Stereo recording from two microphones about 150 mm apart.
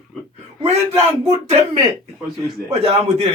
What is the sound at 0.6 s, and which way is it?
Speech, 45° right (ahead or behind).